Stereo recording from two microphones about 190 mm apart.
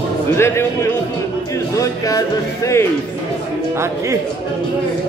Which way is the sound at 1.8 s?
15° left (ahead or behind).